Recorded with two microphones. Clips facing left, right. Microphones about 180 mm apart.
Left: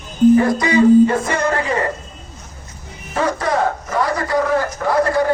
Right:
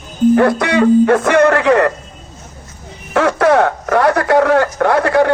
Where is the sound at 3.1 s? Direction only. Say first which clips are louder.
Right 7 dB; 75° right (ahead or behind).